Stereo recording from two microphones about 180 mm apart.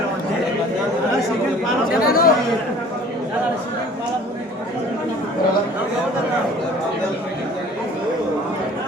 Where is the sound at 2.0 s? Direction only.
55° left (ahead or behind).